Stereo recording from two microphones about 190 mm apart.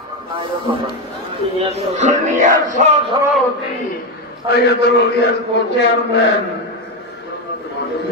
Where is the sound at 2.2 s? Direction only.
40° right (ahead or behind).